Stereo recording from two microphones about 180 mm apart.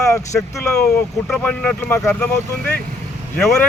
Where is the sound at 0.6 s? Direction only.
5° left (ahead or behind).